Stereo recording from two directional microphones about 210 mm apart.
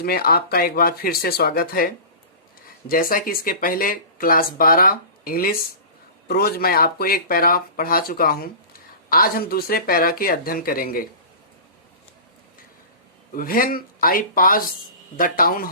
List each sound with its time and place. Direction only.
0.0 s speech: 45° left (ahead or behind)
2.9 s speech: 40° left (ahead or behind)
13.3 s speech: 40° left (ahead or behind)